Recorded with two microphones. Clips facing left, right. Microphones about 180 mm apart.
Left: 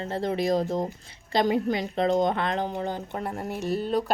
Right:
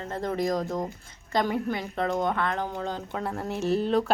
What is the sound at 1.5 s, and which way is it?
Speech, 90° left.